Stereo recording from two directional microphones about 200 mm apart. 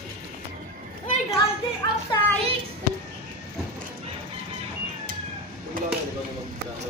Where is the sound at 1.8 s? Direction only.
20° left (ahead or behind).